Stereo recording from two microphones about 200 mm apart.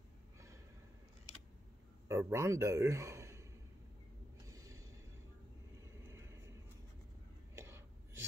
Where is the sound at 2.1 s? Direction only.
15° right (ahead or behind).